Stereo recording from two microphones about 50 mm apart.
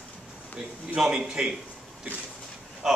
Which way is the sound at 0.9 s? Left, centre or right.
Centre.